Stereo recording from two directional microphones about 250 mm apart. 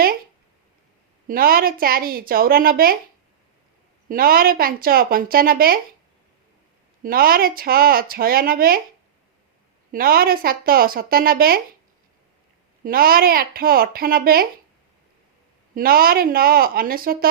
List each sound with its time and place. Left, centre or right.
1.3 s speech: right
4.1 s speech: right
7.0 s speech: right
9.9 s speech: right
12.8 s speech: right
15.7 s speech: right